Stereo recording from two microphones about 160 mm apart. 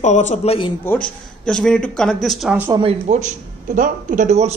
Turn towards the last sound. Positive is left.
turn(degrees=-45)  # may be behind; listen again after turning